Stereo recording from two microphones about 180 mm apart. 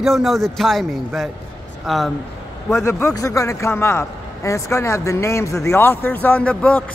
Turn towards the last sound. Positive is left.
turn(degrees=5)  # may be behind; listen again after turning